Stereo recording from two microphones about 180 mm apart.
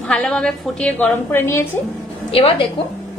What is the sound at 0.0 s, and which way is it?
A woman's voice, 5° left (ahead or behind).